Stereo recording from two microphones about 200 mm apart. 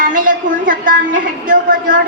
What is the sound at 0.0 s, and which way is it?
A woman's voice, 40° right (ahead or behind).